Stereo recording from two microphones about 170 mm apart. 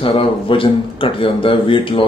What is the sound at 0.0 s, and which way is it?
Speech, 30° left (ahead or behind).